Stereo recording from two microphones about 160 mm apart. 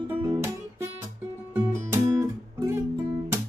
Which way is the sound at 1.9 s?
15° right (ahead or behind).